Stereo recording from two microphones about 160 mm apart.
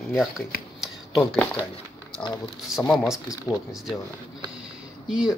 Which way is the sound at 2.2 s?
30° left (ahead or behind).